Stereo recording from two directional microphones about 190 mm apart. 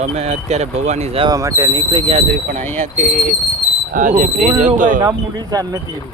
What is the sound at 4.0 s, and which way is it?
Speech, 45° right (ahead or behind).